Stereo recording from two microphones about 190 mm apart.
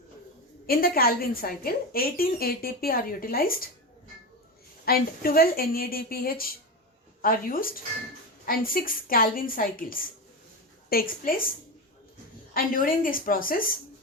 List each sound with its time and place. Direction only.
0.7 s a woman's voice: 50° left (ahead or behind)
4.9 s a woman's voice: 50° left (ahead or behind)
12.5 s a woman's voice: 45° left (ahead or behind)